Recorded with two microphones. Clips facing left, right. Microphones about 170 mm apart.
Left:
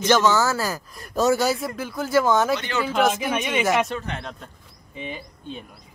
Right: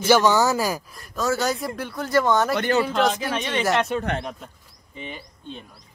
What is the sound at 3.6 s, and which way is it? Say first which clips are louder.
Speech: even; centre (ahead or behind).